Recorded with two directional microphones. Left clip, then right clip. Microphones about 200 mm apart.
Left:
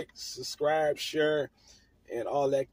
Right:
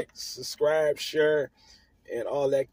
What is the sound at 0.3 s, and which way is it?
Speech, 15° right (ahead or behind).